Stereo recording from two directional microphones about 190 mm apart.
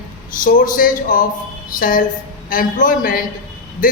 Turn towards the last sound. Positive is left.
turn(degrees=45)  # may be behind; listen again after turning